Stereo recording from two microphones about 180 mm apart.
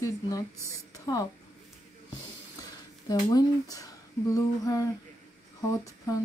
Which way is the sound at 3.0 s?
20° left (ahead or behind).